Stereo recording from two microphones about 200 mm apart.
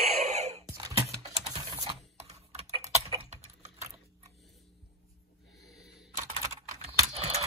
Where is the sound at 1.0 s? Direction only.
20° right (ahead or behind).